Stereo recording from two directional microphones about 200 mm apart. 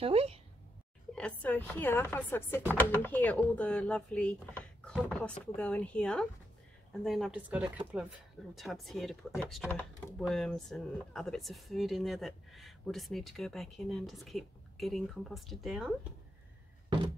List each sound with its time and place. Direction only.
0.0 s a woman's voice: 30° right (ahead or behind)
1.1 s speech: 5° left (ahead or behind)